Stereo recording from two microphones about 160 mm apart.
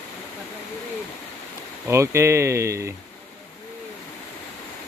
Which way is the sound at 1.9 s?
15° right (ahead or behind).